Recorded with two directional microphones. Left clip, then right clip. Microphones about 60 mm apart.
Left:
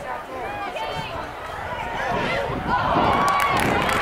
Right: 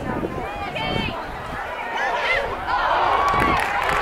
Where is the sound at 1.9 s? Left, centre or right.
Right.